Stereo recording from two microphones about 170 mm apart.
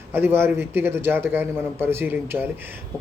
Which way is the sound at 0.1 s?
15° right (ahead or behind).